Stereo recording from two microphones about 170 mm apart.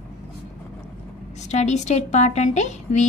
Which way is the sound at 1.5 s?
40° left (ahead or behind).